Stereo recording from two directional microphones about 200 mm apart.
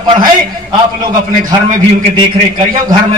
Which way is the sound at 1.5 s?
25° right (ahead or behind).